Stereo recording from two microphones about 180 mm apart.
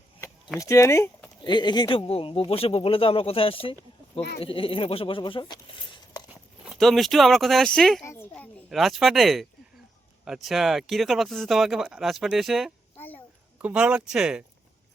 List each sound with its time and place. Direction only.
0.6 s speech: 15° left (ahead or behind)
1.4 s speech: 25° left (ahead or behind)
6.7 s speech: centre (ahead or behind)
8.0 s a sound: 15° left (ahead or behind)
8.7 s speech: centre (ahead or behind)
13.0 s a sound: 10° left (ahead or behind)
13.6 s speech: 5° right (ahead or behind)